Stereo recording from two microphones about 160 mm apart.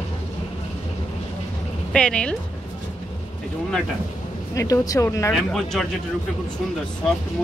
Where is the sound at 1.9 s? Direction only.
5° left (ahead or behind).